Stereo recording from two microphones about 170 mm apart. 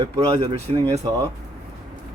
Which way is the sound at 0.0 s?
25° right (ahead or behind).